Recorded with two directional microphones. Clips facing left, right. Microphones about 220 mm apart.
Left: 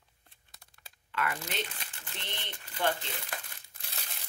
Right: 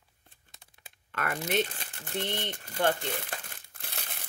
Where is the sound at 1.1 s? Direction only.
50° right (ahead or behind).